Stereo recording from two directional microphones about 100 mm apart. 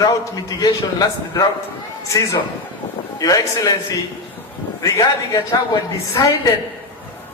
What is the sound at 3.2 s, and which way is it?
Speech, 40° left (ahead or behind).